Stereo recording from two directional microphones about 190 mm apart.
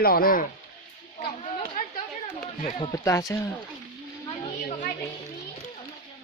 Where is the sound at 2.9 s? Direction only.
15° left (ahead or behind).